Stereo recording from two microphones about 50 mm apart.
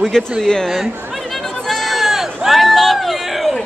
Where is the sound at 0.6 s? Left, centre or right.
Centre.